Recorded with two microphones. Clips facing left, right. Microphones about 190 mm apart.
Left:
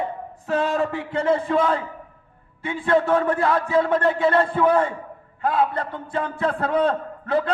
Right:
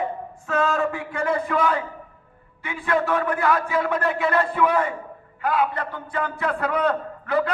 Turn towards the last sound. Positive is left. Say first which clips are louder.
# even
turn(degrees=25)  # may be behind; listen again after turning